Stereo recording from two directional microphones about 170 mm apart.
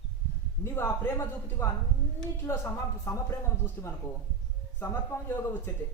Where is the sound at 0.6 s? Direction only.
15° left (ahead or behind).